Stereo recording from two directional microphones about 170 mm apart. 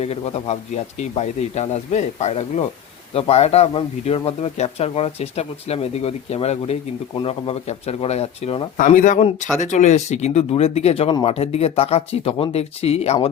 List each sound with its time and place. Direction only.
0.0 s speech: 40° left (ahead or behind)
8.8 s speech: 50° left (ahead or behind)